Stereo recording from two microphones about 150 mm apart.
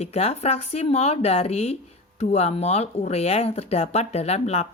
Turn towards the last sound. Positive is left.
turn(degrees=45)  # may be behind; listen again after turning